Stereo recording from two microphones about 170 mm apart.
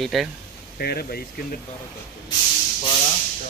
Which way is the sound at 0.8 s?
65° left (ahead or behind).